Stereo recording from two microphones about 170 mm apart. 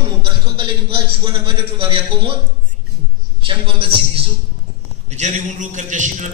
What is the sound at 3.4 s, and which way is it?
Speech, 30° right (ahead or behind).